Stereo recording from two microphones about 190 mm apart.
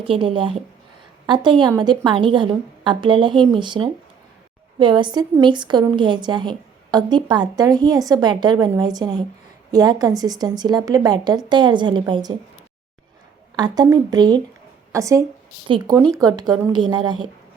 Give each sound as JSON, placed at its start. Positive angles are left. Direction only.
{"t": 0.0, "sound": "a woman's voice", "side_deg": -25}
{"t": 13.6, "sound": "a woman's voice", "side_deg": -20}